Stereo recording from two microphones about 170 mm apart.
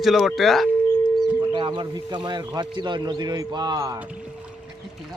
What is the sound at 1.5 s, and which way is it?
A man's voice, 30° right (ahead or behind).